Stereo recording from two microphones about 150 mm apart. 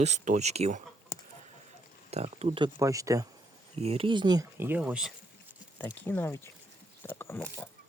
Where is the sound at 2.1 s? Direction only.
45° right (ahead or behind).